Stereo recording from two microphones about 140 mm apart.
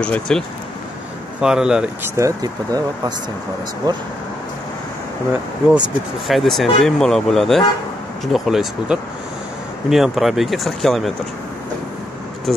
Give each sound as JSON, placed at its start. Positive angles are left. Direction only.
{"t": 0.0, "sound": "speech", "side_deg": 5}
{"t": 1.4, "sound": "speech", "side_deg": -5}
{"t": 2.1, "sound": "speech", "side_deg": -25}
{"t": 3.8, "sound": "speech", "side_deg": -30}
{"t": 5.8, "sound": "speech", "side_deg": 0}
{"t": 12.5, "sound": "speech", "side_deg": 0}